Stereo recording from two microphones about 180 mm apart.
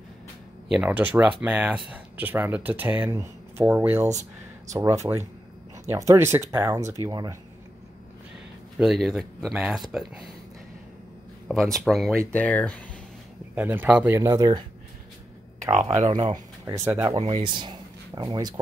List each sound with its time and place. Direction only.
0.7 s speech: 10° right (ahead or behind)
8.7 s speech: centre (ahead or behind)
11.4 s speech: centre (ahead or behind)
13.6 s speech: 10° right (ahead or behind)
15.7 s speech: 40° right (ahead or behind)
16.0 s speech: 25° right (ahead or behind)
17.2 s speech: 30° right (ahead or behind)